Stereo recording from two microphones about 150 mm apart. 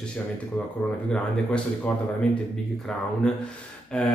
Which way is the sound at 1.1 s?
10° left (ahead or behind).